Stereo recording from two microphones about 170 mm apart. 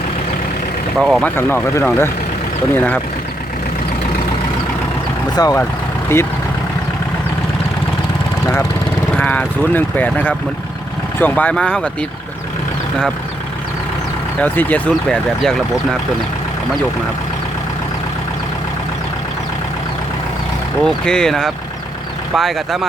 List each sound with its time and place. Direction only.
0.9 s speech: centre (ahead or behind)
1.4 s speech: 15° left (ahead or behind)
5.4 s speech: 20° left (ahead or behind)
9.1 s speech: 5° left (ahead or behind)
14.4 s speech: 10° left (ahead or behind)
20.8 s speech: 5° left (ahead or behind)